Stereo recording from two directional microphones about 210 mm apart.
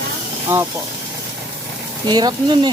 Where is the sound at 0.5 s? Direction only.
10° right (ahead or behind).